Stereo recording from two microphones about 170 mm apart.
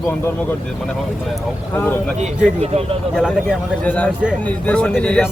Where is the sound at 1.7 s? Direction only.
15° left (ahead or behind).